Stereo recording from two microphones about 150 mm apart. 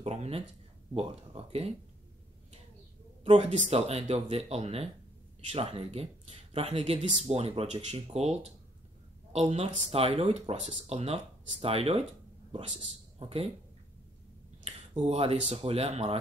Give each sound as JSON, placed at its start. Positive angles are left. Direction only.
{"t": 0.0, "sound": "a sound", "side_deg": -45}
{"t": 0.9, "sound": "speech", "side_deg": -40}
{"t": 3.3, "sound": "speech", "side_deg": -50}
{"t": 13.2, "sound": "speech", "side_deg": -40}
{"t": 14.6, "sound": "speech", "side_deg": -45}